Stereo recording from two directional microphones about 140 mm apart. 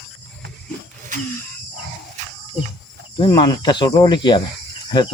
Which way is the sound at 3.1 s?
35° left (ahead or behind).